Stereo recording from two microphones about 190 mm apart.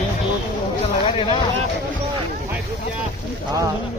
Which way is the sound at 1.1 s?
30° left (ahead or behind).